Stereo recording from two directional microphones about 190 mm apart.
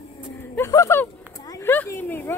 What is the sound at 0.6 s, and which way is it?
Speech, 15° left (ahead or behind).